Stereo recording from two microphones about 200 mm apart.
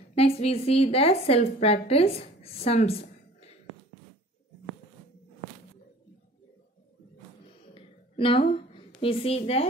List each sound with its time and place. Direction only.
0.1 s a woman's voice: 30° left (ahead or behind)
7.7 s a sound: 25° left (ahead or behind)
9.0 s a woman's voice: 30° left (ahead or behind)